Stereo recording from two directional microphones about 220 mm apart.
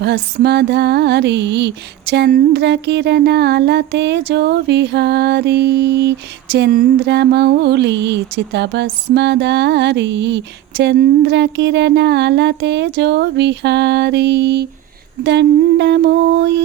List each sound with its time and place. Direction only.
0.0 s mantra: 50° right (ahead or behind)